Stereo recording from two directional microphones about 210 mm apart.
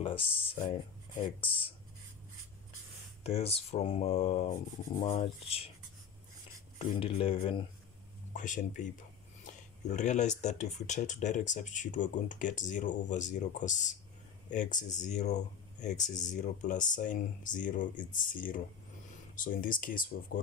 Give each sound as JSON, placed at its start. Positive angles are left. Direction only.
{"t": 0.0, "sound": "a sound", "side_deg": 25}
{"t": 1.4, "sound": "speech", "side_deg": 25}
{"t": 3.3, "sound": "speech", "side_deg": 30}
{"t": 6.8, "sound": "speech", "side_deg": 25}
{"t": 8.3, "sound": "speech", "side_deg": 35}